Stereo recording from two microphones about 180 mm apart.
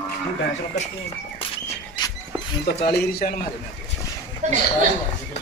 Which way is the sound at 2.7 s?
65° left (ahead or behind).